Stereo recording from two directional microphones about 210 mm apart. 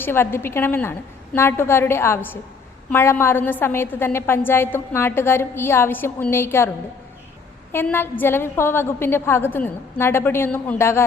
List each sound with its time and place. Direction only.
0.0 s a woman's voice: 10° left (ahead or behind)
7.7 s a woman's voice: 10° left (ahead or behind)